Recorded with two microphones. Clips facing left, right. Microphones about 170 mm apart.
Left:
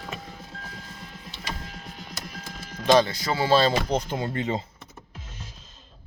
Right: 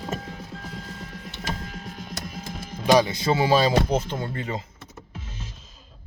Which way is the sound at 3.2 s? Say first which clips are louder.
Right 4 dB; 25° right (ahead or behind).